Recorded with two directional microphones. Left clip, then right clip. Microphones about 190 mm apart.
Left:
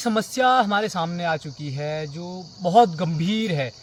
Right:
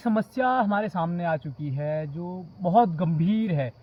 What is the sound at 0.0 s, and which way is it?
Speech, 25° left (ahead or behind).